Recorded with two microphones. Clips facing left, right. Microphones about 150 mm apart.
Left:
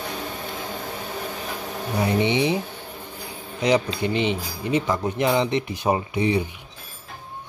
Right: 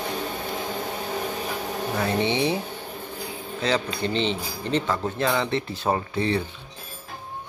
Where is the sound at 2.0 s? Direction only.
15° left (ahead or behind).